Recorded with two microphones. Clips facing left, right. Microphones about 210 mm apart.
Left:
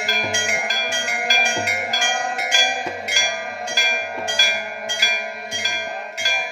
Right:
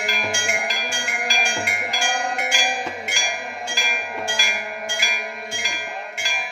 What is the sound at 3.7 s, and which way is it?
Bell, 40° left (ahead or behind).